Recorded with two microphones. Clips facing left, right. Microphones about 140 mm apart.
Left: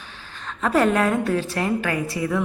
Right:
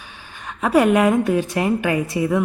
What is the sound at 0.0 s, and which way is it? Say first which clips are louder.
A woman's voice: right 1 dB; 10° right (ahead or behind).